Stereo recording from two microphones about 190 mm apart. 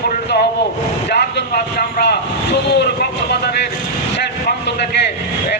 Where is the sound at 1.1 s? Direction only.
60° left (ahead or behind).